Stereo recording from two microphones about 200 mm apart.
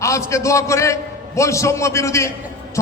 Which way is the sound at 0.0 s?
15° left (ahead or behind).